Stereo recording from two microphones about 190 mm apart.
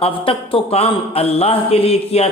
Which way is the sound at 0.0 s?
30° left (ahead or behind).